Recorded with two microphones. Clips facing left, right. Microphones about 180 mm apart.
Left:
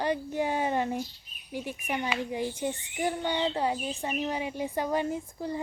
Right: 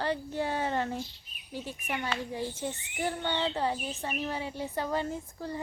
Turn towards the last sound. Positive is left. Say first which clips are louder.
# left 4 dB
turn(degrees=15)  # may be behind; listen again after turning